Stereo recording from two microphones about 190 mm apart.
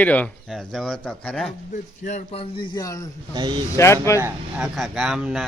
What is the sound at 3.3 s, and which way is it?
Speech, 20° right (ahead or behind).